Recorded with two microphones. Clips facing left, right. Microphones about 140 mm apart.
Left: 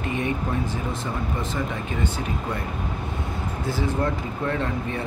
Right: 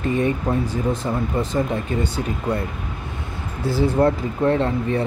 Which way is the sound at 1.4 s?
35° right (ahead or behind).